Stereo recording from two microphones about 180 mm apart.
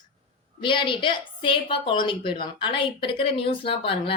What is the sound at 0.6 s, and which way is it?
A woman's voice, 30° left (ahead or behind).